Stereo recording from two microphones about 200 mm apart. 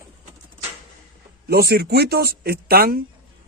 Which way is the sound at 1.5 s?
50° right (ahead or behind).